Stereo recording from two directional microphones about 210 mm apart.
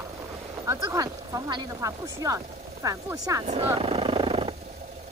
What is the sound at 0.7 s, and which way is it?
Speech, 15° right (ahead or behind).